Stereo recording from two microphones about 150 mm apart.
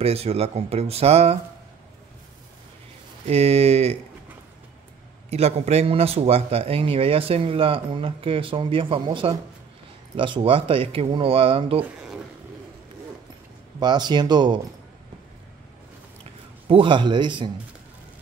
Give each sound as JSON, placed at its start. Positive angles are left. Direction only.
{"t": 0.0, "sound": "speech", "side_deg": -45}
{"t": 3.3, "sound": "speech", "side_deg": -45}
{"t": 5.3, "sound": "a man's voice", "side_deg": -45}
{"t": 13.7, "sound": "speech", "side_deg": -30}
{"t": 16.6, "sound": "a man's voice", "side_deg": -35}